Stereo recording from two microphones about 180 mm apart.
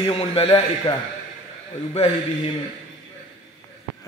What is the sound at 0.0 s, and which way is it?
Speech, 30° left (ahead or behind).